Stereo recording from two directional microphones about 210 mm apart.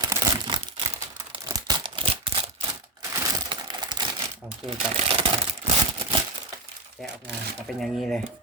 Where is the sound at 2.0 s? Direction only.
25° right (ahead or behind).